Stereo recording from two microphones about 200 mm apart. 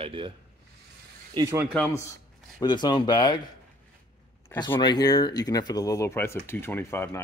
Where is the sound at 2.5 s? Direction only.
20° left (ahead or behind).